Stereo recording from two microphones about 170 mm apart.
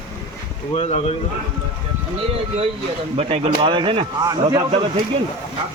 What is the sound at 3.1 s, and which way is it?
A man's voice, 35° right (ahead or behind).